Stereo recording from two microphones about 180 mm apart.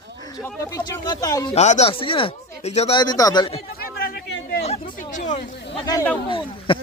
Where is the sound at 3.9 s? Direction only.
60° left (ahead or behind).